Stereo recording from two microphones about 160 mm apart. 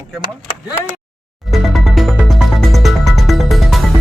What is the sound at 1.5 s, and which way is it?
Music, centre (ahead or behind).